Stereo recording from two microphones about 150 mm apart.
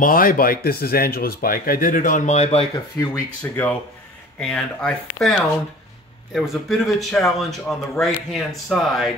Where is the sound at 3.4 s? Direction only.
10° left (ahead or behind).